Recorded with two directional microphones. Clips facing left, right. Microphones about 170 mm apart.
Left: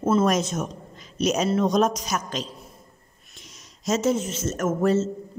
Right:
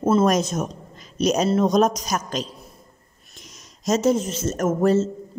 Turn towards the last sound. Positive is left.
turn(degrees=-35)  # may be behind; listen again after turning